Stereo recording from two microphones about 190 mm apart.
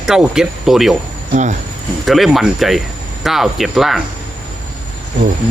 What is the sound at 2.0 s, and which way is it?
Speech, centre (ahead or behind).